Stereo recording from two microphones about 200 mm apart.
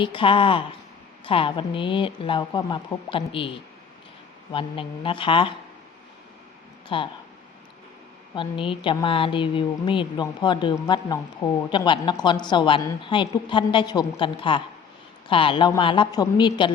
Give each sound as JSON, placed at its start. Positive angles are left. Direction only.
{"t": 0.0, "sound": "speech", "side_deg": 25}
{"t": 4.5, "sound": "speech", "side_deg": 25}
{"t": 6.8, "sound": "speech", "side_deg": 25}
{"t": 8.4, "sound": "speech", "side_deg": 25}